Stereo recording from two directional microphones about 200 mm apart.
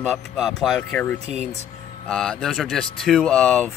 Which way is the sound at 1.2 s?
30° right (ahead or behind).